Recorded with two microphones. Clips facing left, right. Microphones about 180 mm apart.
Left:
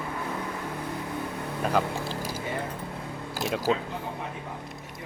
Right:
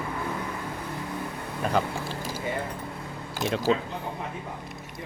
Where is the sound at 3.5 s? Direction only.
5° left (ahead or behind).